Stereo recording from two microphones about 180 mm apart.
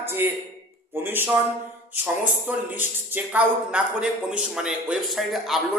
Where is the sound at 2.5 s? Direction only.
10° right (ahead or behind).